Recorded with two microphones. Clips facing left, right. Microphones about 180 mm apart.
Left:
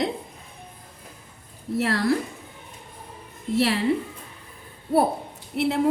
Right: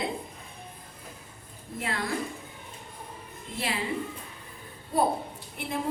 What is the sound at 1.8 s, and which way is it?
Speech, 75° left (ahead or behind).